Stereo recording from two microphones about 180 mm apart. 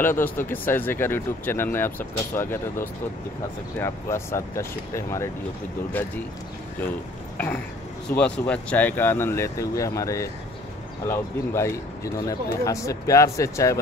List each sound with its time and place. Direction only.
0.0 s speech: 10° left (ahead or behind)
8.1 s speech: 5° left (ahead or behind)